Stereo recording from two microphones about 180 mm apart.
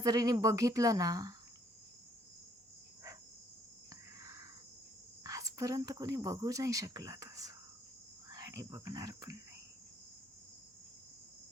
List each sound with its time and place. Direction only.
0.0 s speech: 20° right (ahead or behind)
4.2 s cricket: 15° right (ahead or behind)
5.2 s speech: 20° right (ahead or behind)
8.3 s cricket: 20° right (ahead or behind)